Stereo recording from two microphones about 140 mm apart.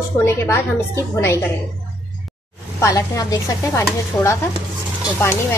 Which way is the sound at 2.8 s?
25° left (ahead or behind).